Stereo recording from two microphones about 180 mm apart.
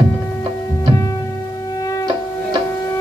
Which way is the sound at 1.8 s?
20° left (ahead or behind).